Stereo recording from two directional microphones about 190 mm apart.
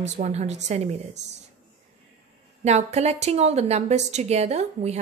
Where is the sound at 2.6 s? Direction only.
35° right (ahead or behind).